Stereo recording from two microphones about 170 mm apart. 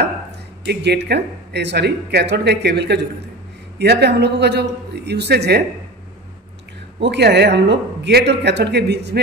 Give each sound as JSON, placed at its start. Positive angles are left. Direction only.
{"t": 0.7, "sound": "speech", "side_deg": -80}
{"t": 7.0, "sound": "speech", "side_deg": -85}